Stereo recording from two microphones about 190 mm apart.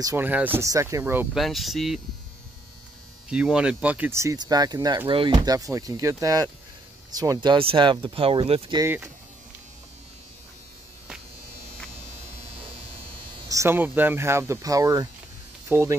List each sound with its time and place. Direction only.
0.0 s speech: 15° right (ahead or behind)
1.3 s speech: centre (ahead or behind)
3.3 s speech: 5° right (ahead or behind); by 8.8 s 25° right (ahead or behind)
8.8 s speech: 10° right (ahead or behind)
13.5 s speech: 15° right (ahead or behind)